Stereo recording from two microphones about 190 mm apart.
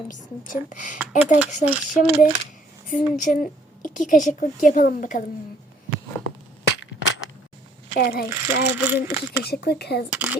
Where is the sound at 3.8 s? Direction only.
45° left (ahead or behind).